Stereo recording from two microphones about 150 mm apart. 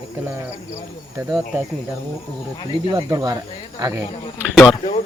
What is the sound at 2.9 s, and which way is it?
Speech, 25° right (ahead or behind).